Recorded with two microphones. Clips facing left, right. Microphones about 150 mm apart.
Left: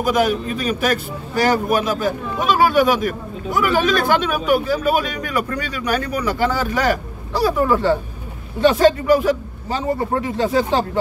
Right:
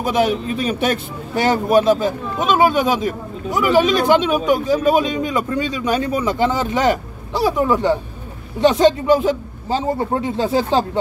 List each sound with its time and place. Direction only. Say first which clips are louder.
0.0 s speech: even; 25° right (ahead or behind)